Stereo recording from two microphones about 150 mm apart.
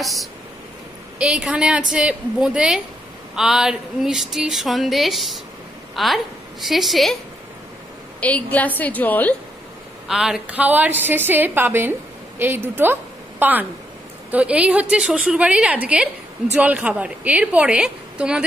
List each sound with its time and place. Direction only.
0.0 s a sound: centre (ahead or behind)
5.9 s a woman's voice: centre (ahead or behind)
8.2 s a woman's voice: 10° left (ahead or behind)
10.0 s a woman's voice: 5° right (ahead or behind)